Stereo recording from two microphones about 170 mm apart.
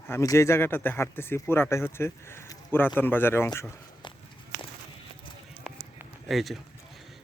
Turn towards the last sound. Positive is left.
turn(degrees=0)  # may be behind; listen again after turning